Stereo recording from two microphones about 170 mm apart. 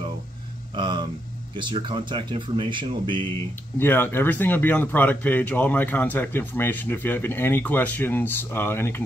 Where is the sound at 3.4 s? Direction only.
15° left (ahead or behind).